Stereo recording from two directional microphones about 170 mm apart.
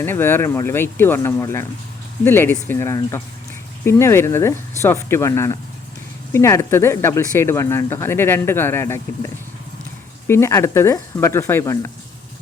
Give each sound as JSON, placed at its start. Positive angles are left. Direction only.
{"t": 0.0, "sound": "speech", "side_deg": 15}